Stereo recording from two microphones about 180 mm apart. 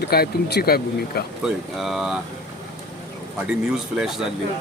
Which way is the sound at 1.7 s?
Centre (ahead or behind).